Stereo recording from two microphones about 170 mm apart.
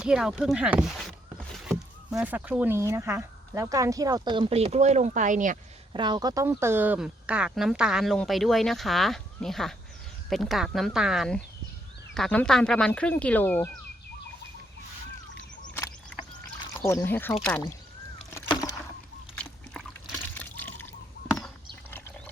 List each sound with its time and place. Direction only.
0.0 s speech: 5° right (ahead or behind); by 5.5 s 50° right (ahead or behind)
5.9 s speech: 25° right (ahead or behind); by 13.7 s 10° left (ahead or behind)
16.8 s speech: 15° left (ahead or behind)
20.3 s water: 10° left (ahead or behind)
21.8 s a sound: 15° left (ahead or behind)